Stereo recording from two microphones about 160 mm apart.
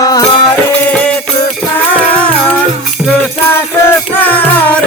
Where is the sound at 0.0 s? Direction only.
25° left (ahead or behind).